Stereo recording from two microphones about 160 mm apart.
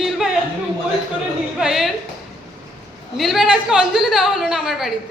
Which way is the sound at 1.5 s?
5° right (ahead or behind).